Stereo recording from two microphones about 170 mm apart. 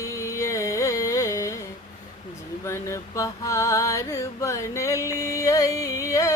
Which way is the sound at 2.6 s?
15° left (ahead or behind).